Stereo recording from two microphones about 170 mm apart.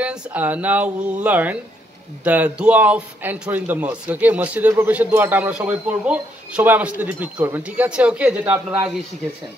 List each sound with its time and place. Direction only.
0.0 s a man's voice: 10° right (ahead or behind)